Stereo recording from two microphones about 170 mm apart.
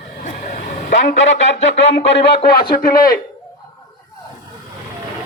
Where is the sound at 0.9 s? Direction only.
90° left.